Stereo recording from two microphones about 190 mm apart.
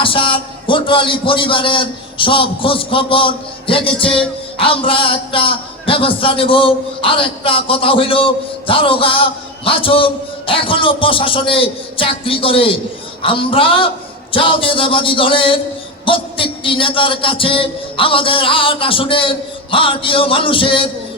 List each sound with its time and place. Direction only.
0.0 s a man's voice: 25° left (ahead or behind)